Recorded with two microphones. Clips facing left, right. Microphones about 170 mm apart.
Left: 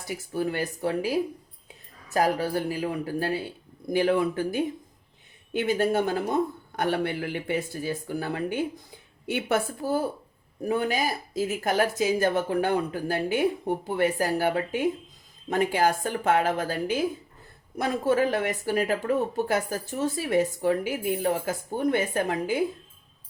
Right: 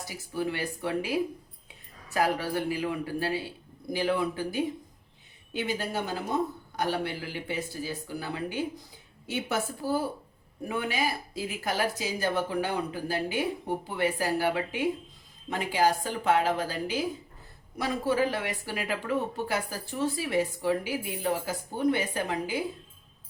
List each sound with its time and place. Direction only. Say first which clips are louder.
0.1 s a woman's voice: left 4 dB; 45° left (ahead or behind)
10.7 s speech: left 4 dB; 40° left (ahead or behind)